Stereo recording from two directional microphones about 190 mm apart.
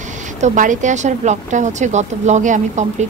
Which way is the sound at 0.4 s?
40° right (ahead or behind).